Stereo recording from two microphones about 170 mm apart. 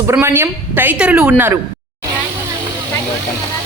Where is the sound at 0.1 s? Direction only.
15° right (ahead or behind).